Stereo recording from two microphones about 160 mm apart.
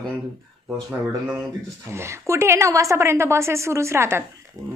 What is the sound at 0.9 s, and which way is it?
Speech, 5° right (ahead or behind).